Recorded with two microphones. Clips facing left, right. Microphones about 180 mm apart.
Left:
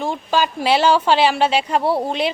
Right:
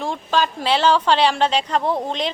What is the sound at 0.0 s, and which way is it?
A woman's voice, 5° left (ahead or behind).